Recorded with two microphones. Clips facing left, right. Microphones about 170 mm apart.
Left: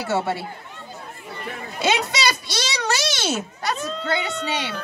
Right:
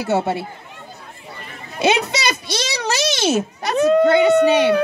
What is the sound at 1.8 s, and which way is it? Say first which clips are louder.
A child's voice: right 4 dB; 20° right (ahead or behind).